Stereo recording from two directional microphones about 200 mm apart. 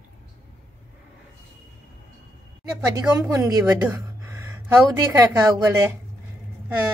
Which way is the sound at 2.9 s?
15° right (ahead or behind).